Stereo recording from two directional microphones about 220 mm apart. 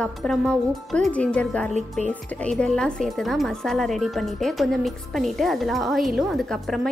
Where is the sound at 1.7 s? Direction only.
30° right (ahead or behind).